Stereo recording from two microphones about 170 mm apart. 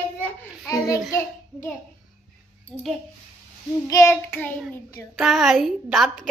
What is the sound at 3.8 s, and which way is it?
Child singing, 20° left (ahead or behind).